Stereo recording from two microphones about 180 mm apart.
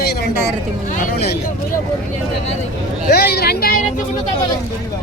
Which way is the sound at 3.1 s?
65° left (ahead or behind).